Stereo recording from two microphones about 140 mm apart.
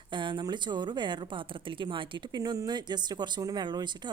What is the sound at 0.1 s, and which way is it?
Speech, 35° right (ahead or behind).